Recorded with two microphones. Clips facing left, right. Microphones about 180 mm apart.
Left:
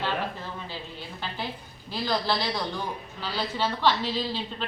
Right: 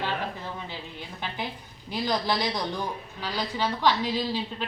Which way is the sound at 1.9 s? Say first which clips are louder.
Even; 15° right (ahead or behind).